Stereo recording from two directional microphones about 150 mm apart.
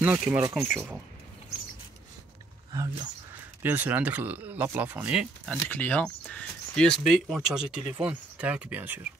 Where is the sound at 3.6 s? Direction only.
15° right (ahead or behind).